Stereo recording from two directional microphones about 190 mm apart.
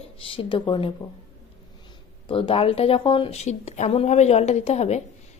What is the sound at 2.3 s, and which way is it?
A woman's voice, 30° left (ahead or behind).